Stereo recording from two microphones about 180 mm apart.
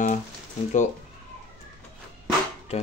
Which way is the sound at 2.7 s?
35° left (ahead or behind).